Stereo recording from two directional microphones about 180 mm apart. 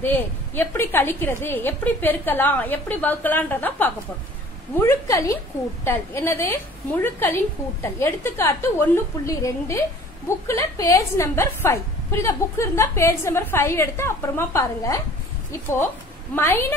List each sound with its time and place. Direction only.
0.0 s a woman's voice: 10° left (ahead or behind)
16.3 s a woman's voice: 10° left (ahead or behind)